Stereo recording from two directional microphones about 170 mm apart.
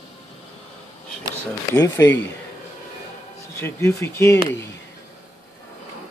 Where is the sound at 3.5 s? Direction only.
15° left (ahead or behind).